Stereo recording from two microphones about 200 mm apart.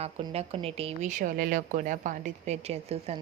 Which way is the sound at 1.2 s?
40° right (ahead or behind).